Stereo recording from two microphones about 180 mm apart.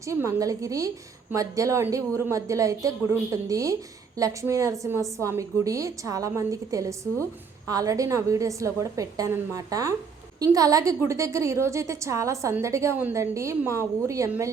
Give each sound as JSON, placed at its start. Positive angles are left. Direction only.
{"t": 0.0, "sound": "a woman's voice", "side_deg": -15}